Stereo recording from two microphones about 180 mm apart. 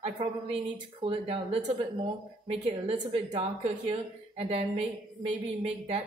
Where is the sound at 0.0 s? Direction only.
35° right (ahead or behind).